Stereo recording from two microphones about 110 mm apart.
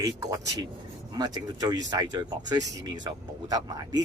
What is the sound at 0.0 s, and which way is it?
Speech, 35° right (ahead or behind).